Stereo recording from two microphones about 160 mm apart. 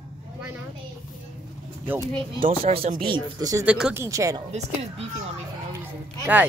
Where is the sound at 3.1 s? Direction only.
25° right (ahead or behind).